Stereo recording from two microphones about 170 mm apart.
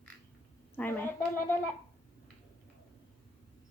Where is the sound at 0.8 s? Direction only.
10° left (ahead or behind).